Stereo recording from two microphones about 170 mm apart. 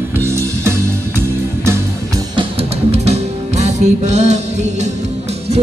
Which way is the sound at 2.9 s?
40° right (ahead or behind).